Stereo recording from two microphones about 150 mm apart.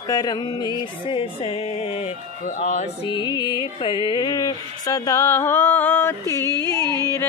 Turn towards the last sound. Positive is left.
turn(degrees=15)  # may be behind; listen again after turning